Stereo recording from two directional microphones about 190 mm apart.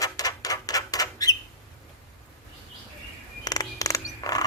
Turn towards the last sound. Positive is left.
turn(degrees=20)  # may be behind; listen again after turning